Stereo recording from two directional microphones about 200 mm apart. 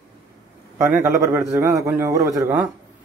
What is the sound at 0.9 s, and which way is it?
A man's voice, 15° right (ahead or behind).